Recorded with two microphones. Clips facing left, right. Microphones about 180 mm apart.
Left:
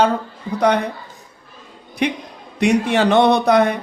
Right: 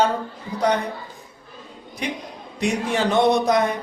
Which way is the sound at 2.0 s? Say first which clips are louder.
Left 7 dB; 65° left (ahead or behind).